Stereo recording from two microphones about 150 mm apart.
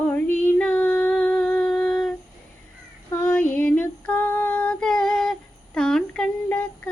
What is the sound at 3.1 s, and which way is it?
Female singing, 15° left (ahead or behind).